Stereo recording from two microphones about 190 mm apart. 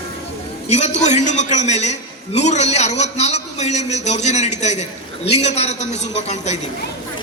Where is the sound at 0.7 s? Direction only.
35° left (ahead or behind).